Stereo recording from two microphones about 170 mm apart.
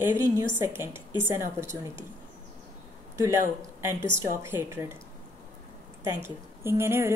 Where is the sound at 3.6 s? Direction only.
15° right (ahead or behind).